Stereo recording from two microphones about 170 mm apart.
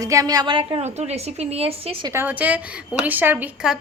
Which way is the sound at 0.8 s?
40° right (ahead or behind).